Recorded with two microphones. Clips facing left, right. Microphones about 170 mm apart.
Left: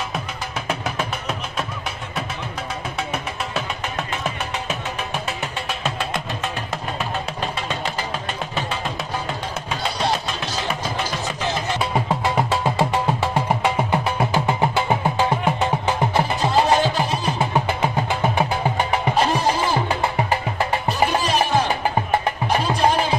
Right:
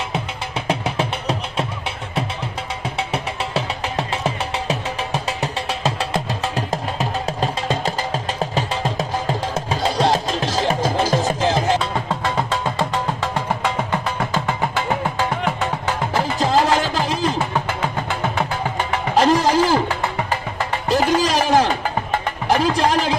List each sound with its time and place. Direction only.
0.7 s music: 30° right (ahead or behind)
4.2 s music: 30° right (ahead or behind)
9.8 s music: 90° right
11.8 s music: 10° left (ahead or behind)
16.3 s music: 90° right
17.4 s music: 15° left (ahead or behind)
19.1 s music: 90° right
19.9 s music: 15° left (ahead or behind)
20.9 s music: 90° right